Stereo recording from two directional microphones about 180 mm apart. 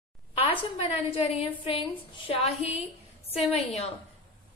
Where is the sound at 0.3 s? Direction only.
30° left (ahead or behind).